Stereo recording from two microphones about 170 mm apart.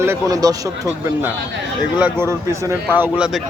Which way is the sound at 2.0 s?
15° right (ahead or behind).